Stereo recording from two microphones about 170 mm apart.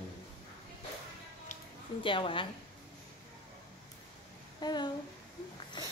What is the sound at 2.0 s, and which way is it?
Speech, 30° left (ahead or behind).